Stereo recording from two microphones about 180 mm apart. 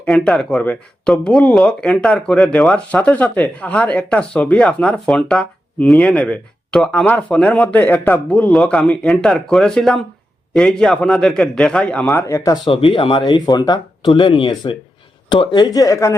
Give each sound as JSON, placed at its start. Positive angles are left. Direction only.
{"t": 0.0, "sound": "speech", "side_deg": 5}
{"t": 12.6, "sound": "speech", "side_deg": 30}